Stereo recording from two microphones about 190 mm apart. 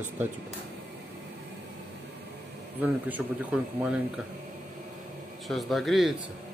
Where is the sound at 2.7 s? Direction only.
10° right (ahead or behind).